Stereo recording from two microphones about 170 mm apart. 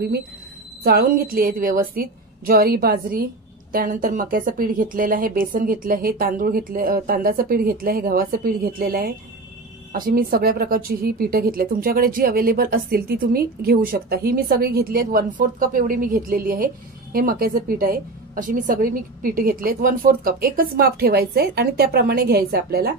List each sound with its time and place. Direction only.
0.8 s a woman's voice: 60° right (ahead or behind)